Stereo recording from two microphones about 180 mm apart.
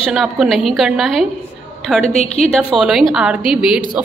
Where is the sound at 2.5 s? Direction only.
Centre (ahead or behind).